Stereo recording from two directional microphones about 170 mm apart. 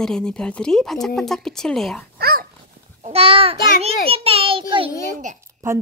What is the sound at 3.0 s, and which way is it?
Speech, 35° right (ahead or behind).